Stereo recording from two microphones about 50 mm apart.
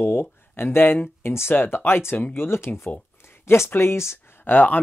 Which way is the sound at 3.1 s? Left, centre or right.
Left.